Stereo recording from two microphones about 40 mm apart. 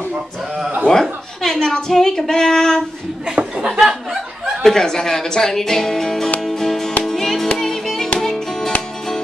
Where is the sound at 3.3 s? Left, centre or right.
Right.